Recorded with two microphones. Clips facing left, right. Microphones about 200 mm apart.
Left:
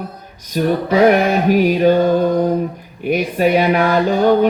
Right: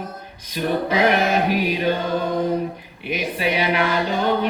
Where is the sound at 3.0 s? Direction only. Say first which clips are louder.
Left 8 dB; 45° left (ahead or behind).